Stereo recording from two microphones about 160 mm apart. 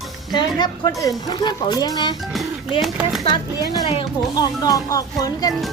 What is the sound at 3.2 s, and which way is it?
Speech, 30° left (ahead or behind).